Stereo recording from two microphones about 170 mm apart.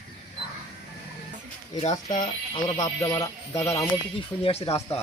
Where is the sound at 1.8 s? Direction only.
40° left (ahead or behind).